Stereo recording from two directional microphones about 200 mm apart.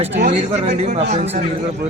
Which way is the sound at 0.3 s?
30° right (ahead or behind).